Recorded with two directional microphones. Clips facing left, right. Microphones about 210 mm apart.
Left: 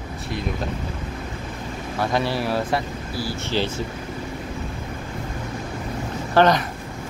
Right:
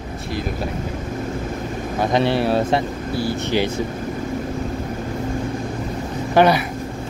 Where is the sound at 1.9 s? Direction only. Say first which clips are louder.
Right 5 dB; 20° right (ahead or behind).